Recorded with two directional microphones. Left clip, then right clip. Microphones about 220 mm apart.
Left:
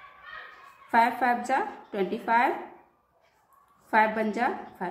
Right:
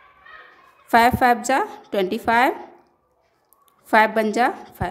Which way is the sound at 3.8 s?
55° right (ahead or behind).